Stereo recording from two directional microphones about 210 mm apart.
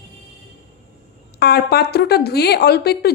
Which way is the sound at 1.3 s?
50° left (ahead or behind).